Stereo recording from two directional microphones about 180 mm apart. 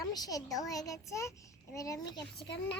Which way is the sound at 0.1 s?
20° left (ahead or behind).